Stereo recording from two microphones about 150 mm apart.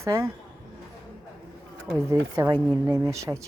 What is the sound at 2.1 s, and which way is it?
Speech, 20° right (ahead or behind).